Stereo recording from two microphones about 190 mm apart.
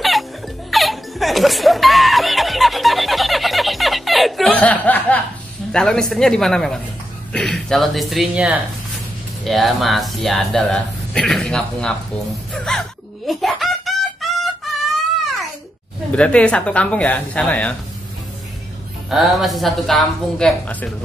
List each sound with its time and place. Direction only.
0.7 s chuckle: centre (ahead or behind)
5.7 s speech: 5° left (ahead or behind)
12.5 s music: centre (ahead or behind)
13.3 s chicken: centre (ahead or behind)
16.2 s speech: 5° left (ahead or behind)
19.0 s speech: centre (ahead or behind)